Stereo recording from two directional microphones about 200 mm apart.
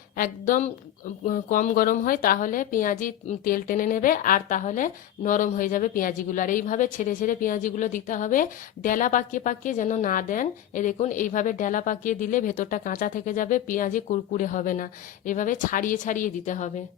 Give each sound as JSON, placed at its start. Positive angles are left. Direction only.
{"t": 0.2, "sound": "a woman's voice", "side_deg": 40}